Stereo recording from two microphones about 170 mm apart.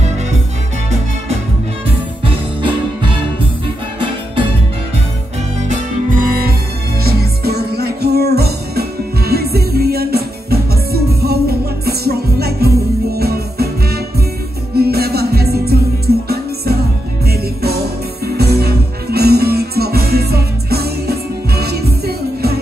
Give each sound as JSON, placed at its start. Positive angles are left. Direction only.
{"t": 2.2, "sound": "music", "side_deg": -30}
{"t": 5.7, "sound": "music", "side_deg": -55}
{"t": 7.0, "sound": "music", "side_deg": -65}
{"t": 17.3, "sound": "music", "side_deg": -70}